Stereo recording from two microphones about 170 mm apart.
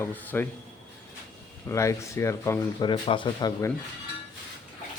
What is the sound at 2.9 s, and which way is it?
Speech, 30° left (ahead or behind).